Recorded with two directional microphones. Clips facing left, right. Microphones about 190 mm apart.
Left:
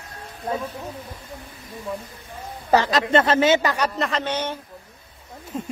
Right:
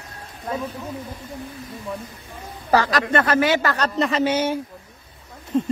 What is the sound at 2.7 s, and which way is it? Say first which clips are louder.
Speech: left 1 dB; 25° left (ahead or behind).